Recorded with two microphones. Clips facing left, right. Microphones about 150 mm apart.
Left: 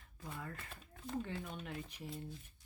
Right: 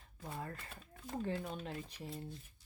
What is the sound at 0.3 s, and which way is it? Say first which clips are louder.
Speech: right 2 dB; 40° right (ahead or behind).